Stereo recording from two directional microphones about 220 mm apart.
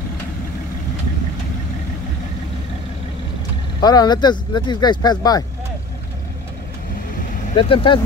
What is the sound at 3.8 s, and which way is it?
Speech, 20° left (ahead or behind).